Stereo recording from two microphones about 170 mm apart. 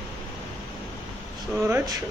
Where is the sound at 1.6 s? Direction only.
15° right (ahead or behind).